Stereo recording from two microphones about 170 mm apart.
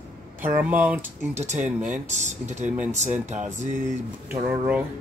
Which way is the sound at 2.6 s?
10° right (ahead or behind).